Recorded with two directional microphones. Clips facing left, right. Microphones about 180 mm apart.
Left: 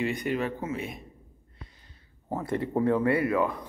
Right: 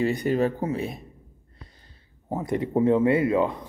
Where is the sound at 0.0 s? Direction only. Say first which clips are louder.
Right 6 dB; 35° right (ahead or behind).